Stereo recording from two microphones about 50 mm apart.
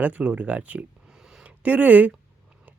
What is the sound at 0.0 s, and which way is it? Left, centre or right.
Speech, right.